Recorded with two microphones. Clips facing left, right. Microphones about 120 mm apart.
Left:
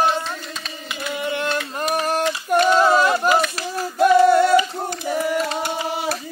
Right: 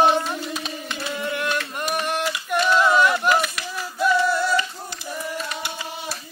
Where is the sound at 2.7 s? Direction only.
35° left (ahead or behind).